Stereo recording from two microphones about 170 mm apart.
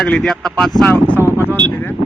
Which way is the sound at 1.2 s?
15° right (ahead or behind).